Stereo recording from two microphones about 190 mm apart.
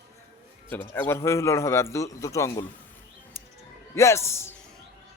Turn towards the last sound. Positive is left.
turn(degrees=15)  # may be behind; listen again after turning